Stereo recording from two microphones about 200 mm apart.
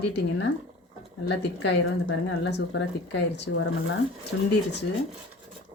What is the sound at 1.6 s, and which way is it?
Speech, 60° left (ahead or behind).